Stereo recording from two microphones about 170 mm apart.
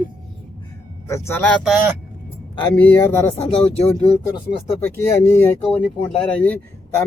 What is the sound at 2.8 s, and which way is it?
Speech, 10° left (ahead or behind).